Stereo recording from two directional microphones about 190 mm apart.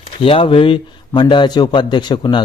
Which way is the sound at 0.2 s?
30° left (ahead or behind).